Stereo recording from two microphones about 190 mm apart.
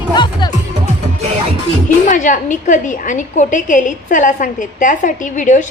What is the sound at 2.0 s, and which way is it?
A woman's voice, 40° left (ahead or behind).